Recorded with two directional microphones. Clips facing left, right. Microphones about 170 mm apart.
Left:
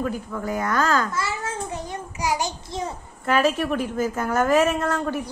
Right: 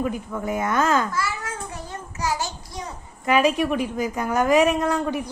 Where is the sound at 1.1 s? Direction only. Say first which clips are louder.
Left 1 dB; 25° left (ahead or behind).